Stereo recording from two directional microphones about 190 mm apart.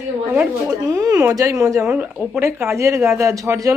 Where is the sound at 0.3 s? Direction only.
15° right (ahead or behind).